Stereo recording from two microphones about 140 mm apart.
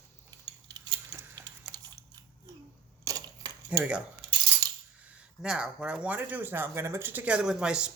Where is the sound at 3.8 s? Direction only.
5° right (ahead or behind).